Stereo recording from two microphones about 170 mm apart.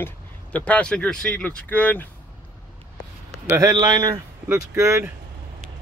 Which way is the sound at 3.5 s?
20° right (ahead or behind).